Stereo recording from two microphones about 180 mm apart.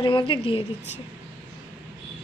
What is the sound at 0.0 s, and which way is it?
Speech, 30° left (ahead or behind).